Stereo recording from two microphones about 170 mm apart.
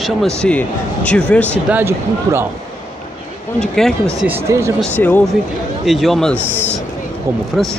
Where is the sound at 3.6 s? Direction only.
5° left (ahead or behind).